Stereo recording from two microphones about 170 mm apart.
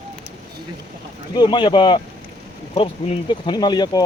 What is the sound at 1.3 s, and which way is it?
Speech, 25° left (ahead or behind).